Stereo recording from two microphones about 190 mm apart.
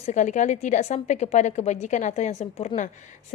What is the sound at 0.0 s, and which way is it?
A woman's voice, 40° left (ahead or behind).